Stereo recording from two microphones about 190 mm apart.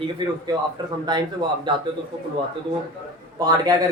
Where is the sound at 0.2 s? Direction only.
25° right (ahead or behind).